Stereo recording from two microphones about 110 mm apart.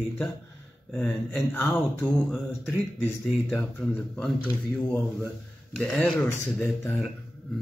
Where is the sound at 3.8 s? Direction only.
10° left (ahead or behind).